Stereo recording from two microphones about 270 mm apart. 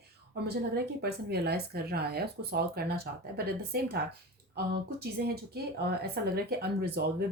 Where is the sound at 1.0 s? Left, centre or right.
Right.